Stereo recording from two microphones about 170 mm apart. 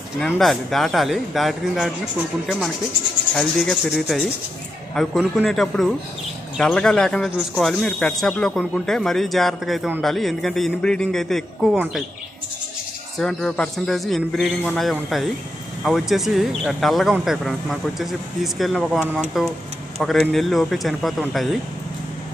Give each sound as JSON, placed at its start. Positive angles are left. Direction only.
{"t": 0.3, "sound": "speech", "side_deg": 0}
{"t": 3.3, "sound": "speech", "side_deg": 0}
{"t": 11.7, "sound": "speech", "side_deg": -10}
{"t": 13.2, "sound": "speech", "side_deg": 0}